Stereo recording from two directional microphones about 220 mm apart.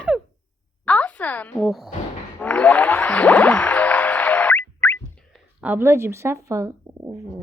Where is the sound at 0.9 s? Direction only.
5° left (ahead or behind).